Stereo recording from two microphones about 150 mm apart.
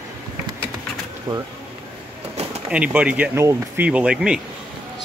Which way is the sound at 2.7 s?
10° right (ahead or behind).